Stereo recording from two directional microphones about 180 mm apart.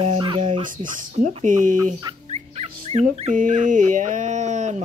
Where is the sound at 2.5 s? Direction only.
35° right (ahead or behind).